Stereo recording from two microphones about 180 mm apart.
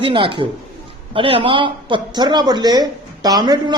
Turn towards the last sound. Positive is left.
turn(degrees=-20)  # may be behind; listen again after turning